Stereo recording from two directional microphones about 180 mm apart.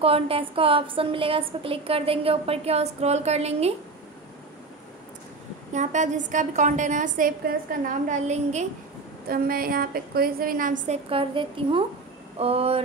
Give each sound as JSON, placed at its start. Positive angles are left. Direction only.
{"t": 0.0, "sound": "a woman's voice", "side_deg": -30}
{"t": 5.7, "sound": "a woman's voice", "side_deg": -40}
{"t": 9.3, "sound": "a woman's voice", "side_deg": -55}
{"t": 11.1, "sound": "a woman's voice", "side_deg": -30}